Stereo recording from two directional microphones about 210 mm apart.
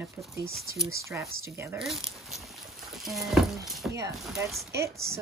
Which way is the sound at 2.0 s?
Centre (ahead or behind).